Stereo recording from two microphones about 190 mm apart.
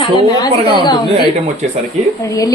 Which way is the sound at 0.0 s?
20° left (ahead or behind).